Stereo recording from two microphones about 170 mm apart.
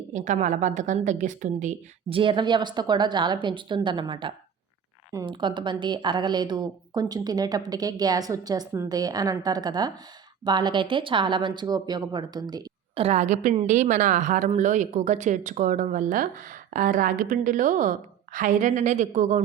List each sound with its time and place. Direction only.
0.1 s a woman's voice: 45° right (ahead or behind)
2.0 s a woman's voice: 30° right (ahead or behind)
13.0 s a woman's voice: 40° right (ahead or behind)